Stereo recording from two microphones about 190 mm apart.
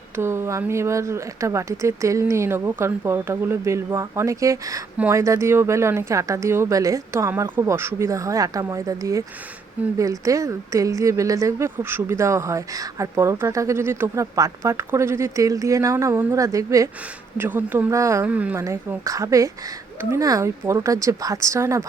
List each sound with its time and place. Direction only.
0.2 s speech: 15° right (ahead or behind)